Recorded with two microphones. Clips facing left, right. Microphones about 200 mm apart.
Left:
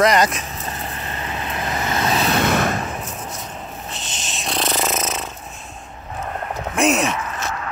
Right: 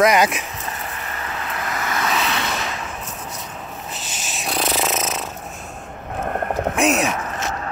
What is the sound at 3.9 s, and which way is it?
Snoring, 5° right (ahead or behind).